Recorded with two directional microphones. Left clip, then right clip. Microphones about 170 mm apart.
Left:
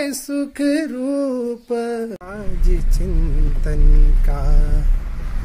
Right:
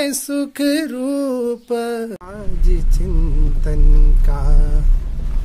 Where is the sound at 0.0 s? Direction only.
Centre (ahead or behind).